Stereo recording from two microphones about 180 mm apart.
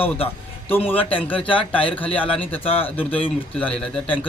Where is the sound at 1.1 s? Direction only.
30° left (ahead or behind).